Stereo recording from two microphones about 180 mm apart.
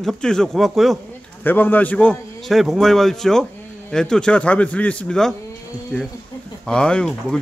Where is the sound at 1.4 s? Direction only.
10° left (ahead or behind).